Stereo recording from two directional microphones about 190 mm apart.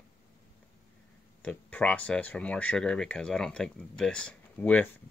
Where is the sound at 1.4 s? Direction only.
5° left (ahead or behind).